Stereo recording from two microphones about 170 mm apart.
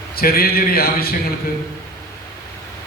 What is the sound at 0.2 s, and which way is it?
Speech, 60° left (ahead or behind).